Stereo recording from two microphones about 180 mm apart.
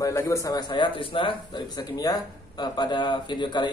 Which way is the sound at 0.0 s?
15° left (ahead or behind).